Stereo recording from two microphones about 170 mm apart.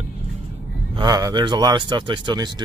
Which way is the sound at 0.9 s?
25° right (ahead or behind).